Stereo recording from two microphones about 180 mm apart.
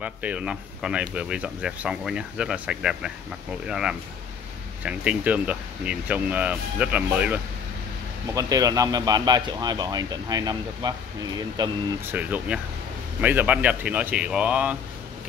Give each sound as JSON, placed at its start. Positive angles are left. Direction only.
{"t": 0.0, "sound": "speech", "side_deg": -5}
{"t": 8.4, "sound": "speech", "side_deg": -20}
{"t": 12.1, "sound": "speech", "side_deg": -10}